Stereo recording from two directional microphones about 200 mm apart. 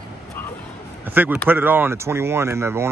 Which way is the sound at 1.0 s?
10° right (ahead or behind).